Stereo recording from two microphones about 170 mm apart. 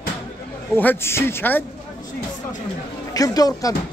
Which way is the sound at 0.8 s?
10° left (ahead or behind).